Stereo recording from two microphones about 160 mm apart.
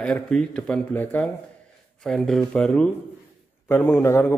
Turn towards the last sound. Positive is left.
turn(degrees=15)  # may be behind; listen again after turning